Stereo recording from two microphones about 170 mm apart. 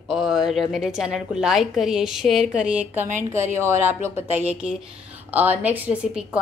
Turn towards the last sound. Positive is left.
turn(degrees=-5)  # may be behind; listen again after turning